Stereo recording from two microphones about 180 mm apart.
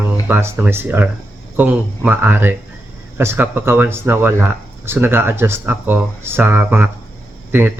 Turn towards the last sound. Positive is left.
turn(degrees=-10)  # may be behind; listen again after turning